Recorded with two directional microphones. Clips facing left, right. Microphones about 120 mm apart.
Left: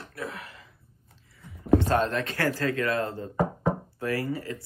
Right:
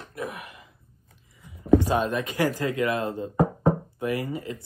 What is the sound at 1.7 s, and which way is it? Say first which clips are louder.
Speech: right 1 dB; 10° right (ahead or behind).